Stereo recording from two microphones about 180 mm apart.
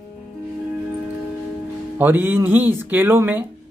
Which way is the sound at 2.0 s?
10° right (ahead or behind).